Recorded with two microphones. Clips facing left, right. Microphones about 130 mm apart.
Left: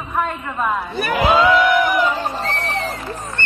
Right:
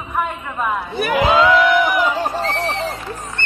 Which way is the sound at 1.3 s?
Centre (ahead or behind).